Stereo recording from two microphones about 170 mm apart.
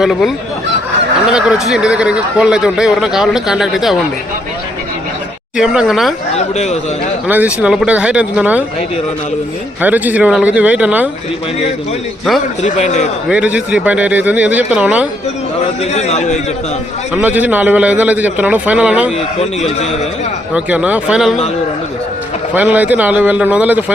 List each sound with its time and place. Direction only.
0.0 s speech: centre (ahead or behind)
5.5 s speech: 5° right (ahead or behind)
6.3 s a man's voice: 40° left (ahead or behind)
7.3 s a man's voice: 10° right (ahead or behind)
9.8 s a man's voice: 10° right (ahead or behind)
12.6 s a man's voice: 45° left (ahead or behind)
13.2 s a man's voice: 5° right (ahead or behind)
15.8 s a man's voice: 40° left (ahead or behind)
17.2 s a man's voice: 10° right (ahead or behind)
19.6 s a man's voice: 40° left (ahead or behind)
20.5 s a man's voice: 10° right (ahead or behind)
22.5 s a man's voice: 10° right (ahead or behind)